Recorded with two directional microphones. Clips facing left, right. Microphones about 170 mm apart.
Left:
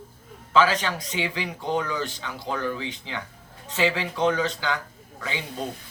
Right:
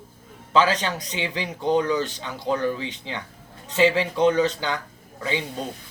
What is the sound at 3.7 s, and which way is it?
Speech, 20° right (ahead or behind).